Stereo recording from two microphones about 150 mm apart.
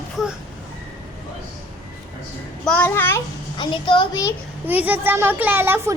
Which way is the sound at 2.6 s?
10° left (ahead or behind).